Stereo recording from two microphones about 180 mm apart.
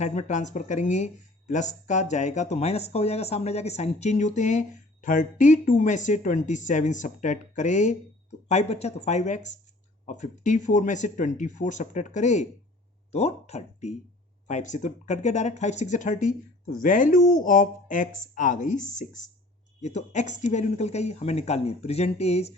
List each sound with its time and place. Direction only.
0.0 s speech: 40° left (ahead or behind)